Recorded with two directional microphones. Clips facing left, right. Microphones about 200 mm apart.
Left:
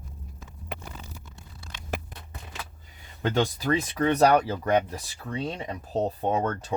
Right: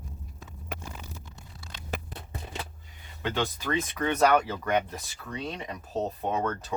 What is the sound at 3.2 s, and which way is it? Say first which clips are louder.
Speech: left 5 dB; 40° left (ahead or behind).